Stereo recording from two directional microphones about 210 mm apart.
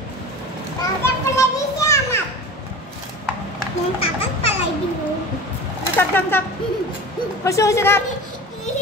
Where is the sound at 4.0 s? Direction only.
30° left (ahead or behind).